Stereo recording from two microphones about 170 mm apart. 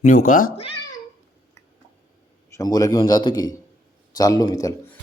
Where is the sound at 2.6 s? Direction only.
20° left (ahead or behind).